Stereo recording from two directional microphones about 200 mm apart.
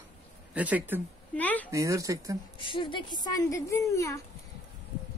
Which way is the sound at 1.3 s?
10° left (ahead or behind).